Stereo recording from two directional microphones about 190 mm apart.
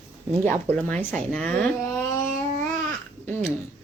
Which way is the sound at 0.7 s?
5° left (ahead or behind).